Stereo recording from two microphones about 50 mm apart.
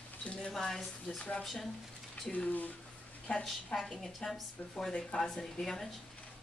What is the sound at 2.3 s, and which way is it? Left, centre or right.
Speech, left.